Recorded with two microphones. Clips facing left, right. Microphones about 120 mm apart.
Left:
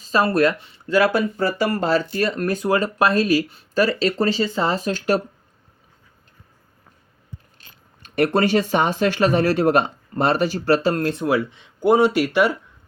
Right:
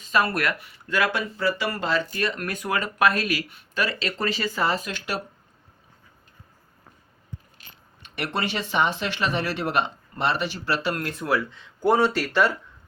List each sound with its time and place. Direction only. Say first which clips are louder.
0.0 s speech: left 6 dB; 30° left (ahead or behind)
8.0 s speech: left 10 dB; 45° left (ahead or behind); by 12.5 s 15° left (ahead or behind)